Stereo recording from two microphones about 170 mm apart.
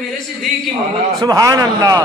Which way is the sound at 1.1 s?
20° right (ahead or behind).